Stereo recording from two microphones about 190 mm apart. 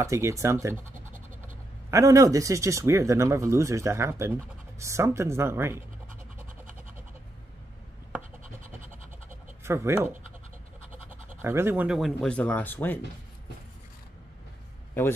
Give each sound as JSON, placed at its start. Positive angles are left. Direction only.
{"t": 0.0, "sound": "speech", "side_deg": -15}
{"t": 1.9, "sound": "speech", "side_deg": -15}
{"t": 8.2, "sound": "scratch", "side_deg": -40}
{"t": 9.7, "sound": "speech", "side_deg": -15}
{"t": 11.1, "sound": "speech", "side_deg": -10}